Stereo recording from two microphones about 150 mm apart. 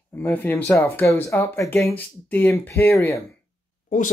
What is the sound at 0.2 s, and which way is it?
Speech, 10° left (ahead or behind).